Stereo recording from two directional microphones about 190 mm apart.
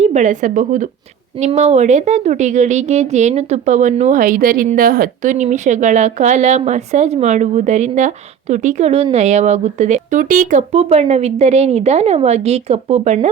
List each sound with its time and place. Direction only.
0.0 s a woman's voice: 40° right (ahead or behind)